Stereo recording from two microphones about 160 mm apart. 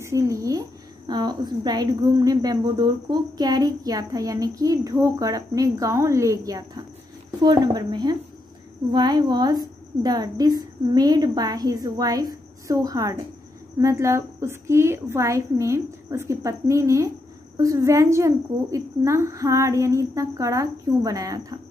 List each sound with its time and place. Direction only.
0.0 s a woman's voice: 20° right (ahead or behind)